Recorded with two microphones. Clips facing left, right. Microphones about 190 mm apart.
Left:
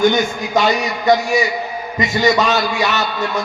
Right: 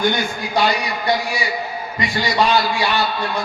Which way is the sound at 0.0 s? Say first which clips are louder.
Left 5 dB; 45° left (ahead or behind).